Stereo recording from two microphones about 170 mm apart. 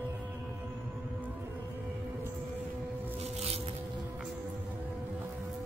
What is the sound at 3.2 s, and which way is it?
Music, 35° right (ahead or behind).